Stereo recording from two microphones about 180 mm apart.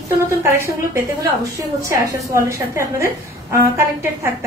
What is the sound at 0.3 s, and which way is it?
A woman's voice, 15° right (ahead or behind).